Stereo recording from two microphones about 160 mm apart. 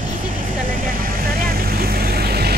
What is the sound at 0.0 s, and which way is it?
Vehicle, 55° right (ahead or behind).